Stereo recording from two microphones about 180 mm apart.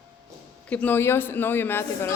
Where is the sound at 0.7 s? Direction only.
10° left (ahead or behind).